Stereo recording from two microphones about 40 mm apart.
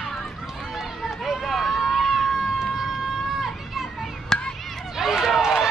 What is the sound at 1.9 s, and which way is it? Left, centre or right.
Run, centre.